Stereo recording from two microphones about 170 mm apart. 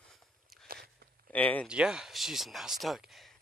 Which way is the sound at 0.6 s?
65° right (ahead or behind).